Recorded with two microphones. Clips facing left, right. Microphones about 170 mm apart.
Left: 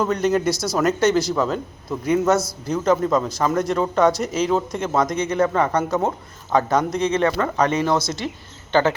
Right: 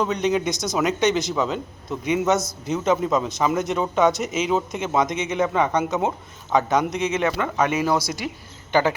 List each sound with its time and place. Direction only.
0.0 s speech: 5° left (ahead or behind)
0.5 s a man's voice: 20° right (ahead or behind)
0.8 s speech: centre (ahead or behind)
2.4 s a man's voice: 20° right (ahead or behind)
2.7 s speech: centre (ahead or behind)